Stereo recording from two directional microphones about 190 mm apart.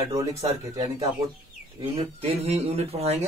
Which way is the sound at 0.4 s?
35° right (ahead or behind).